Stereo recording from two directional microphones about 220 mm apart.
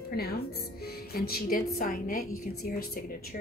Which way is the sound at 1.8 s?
40° left (ahead or behind).